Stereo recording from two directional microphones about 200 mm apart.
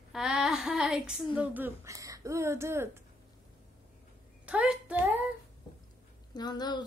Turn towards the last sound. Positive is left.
turn(degrees=20)  # may be behind; listen again after turning